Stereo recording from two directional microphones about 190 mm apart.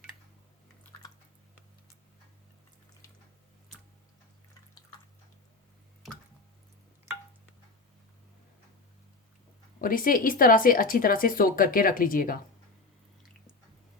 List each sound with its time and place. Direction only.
9.8 s speech: 50° left (ahead or behind)